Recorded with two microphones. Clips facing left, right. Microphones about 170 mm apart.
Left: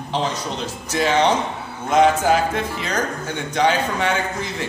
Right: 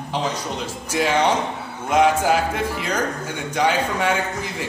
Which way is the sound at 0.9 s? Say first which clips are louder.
Left 1 dB; 10° right (ahead or behind).